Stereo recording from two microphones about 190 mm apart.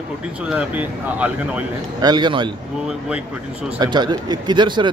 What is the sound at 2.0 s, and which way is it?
Speech, 20° right (ahead or behind).